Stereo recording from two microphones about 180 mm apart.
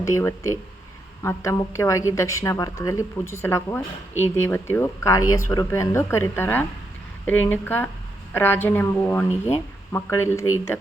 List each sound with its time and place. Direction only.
0.0 s a woman's voice: 15° left (ahead or behind)